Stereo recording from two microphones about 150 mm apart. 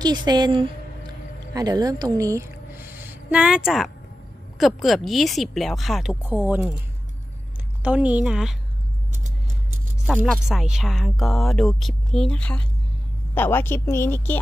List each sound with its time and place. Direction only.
0.0 s a woman's voice: 30° right (ahead or behind); by 6.1 s centre (ahead or behind)
6.2 s a woman's voice: 10° right (ahead or behind)
7.8 s a woman's voice: 10° right (ahead or behind)
10.1 s speech: 5° left (ahead or behind)